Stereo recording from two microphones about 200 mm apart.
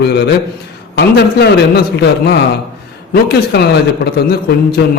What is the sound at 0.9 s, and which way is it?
A man's voice, 55° left (ahead or behind).